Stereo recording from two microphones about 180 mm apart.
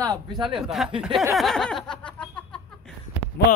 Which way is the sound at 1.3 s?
Centre (ahead or behind).